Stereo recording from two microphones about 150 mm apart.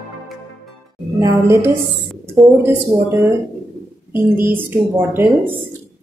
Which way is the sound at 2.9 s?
25° right (ahead or behind).